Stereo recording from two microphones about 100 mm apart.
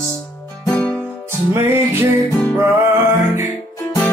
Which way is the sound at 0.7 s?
15° left (ahead or behind).